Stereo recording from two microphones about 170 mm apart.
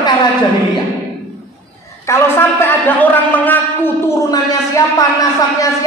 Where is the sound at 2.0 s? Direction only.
15° left (ahead or behind).